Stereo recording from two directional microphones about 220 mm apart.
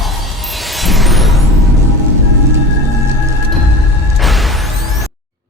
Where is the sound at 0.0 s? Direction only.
Centre (ahead or behind).